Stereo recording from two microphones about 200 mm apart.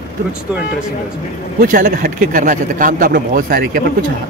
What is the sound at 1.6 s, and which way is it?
Speech, 45° right (ahead or behind).